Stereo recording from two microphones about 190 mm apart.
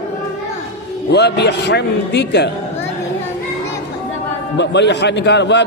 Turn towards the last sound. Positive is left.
turn(degrees=65)  # may be behind; listen again after turning